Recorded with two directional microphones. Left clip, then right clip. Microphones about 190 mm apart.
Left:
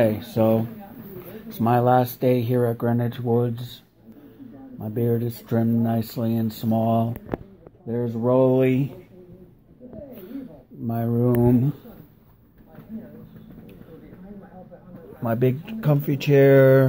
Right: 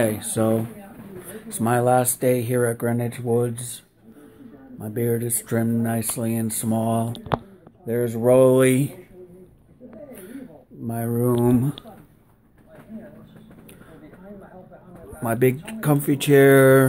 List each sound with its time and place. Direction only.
0.0 s speech: 10° right (ahead or behind)
3.0 s speech: 35° right (ahead or behind)
3.3 s speech: 15° right (ahead or behind)
7.8 s speech: 40° right (ahead or behind)
11.1 s speech: 15° right (ahead or behind)
15.2 s speech: 20° right (ahead or behind)